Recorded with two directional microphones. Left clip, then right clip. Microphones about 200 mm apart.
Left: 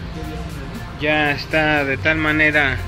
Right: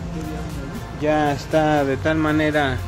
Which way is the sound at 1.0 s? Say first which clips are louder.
Left 2 dB; 15° right (ahead or behind).